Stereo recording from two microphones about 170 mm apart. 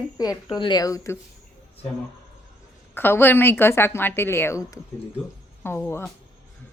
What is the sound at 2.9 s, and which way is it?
A woman's voice, 10° left (ahead or behind).